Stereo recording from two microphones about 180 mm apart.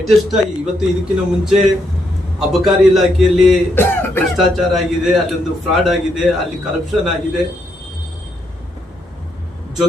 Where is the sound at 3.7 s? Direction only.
10° left (ahead or behind).